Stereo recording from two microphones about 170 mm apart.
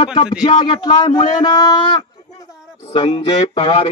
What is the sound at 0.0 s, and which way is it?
Speech, 25° left (ahead or behind).